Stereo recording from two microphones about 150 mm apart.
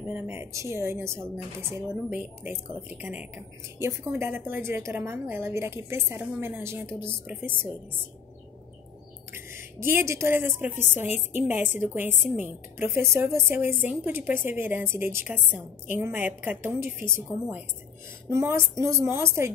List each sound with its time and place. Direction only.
0.1 s a woman's voice: 15° right (ahead or behind)
9.3 s a woman's voice: 15° right (ahead or behind)
18.3 s a woman's voice: 15° right (ahead or behind)